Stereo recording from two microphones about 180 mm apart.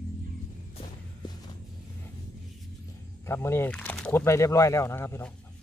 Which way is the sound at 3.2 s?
15° left (ahead or behind).